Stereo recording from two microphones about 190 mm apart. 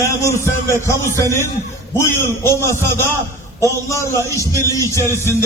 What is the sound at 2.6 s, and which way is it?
Speech, 15° left (ahead or behind).